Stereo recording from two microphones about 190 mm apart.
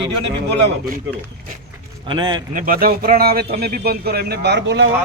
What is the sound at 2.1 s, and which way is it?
Speech, 25° right (ahead or behind).